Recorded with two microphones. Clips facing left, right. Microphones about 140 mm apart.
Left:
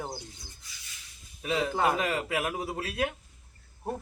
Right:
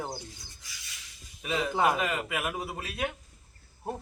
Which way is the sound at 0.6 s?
90° right.